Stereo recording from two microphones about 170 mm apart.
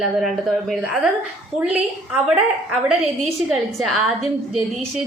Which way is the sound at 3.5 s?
Centre (ahead or behind).